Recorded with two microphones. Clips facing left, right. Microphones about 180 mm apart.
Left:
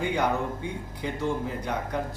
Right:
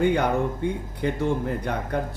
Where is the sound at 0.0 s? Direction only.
55° right (ahead or behind).